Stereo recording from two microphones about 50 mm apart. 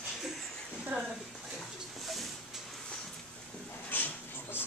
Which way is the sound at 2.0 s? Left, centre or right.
Centre.